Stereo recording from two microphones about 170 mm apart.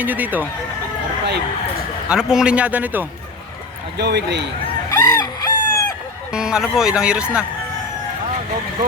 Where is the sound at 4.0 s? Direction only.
75° right (ahead or behind).